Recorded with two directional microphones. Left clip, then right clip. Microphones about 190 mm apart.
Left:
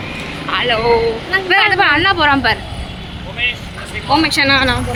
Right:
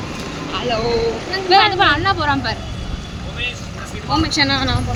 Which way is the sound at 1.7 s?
20° left (ahead or behind).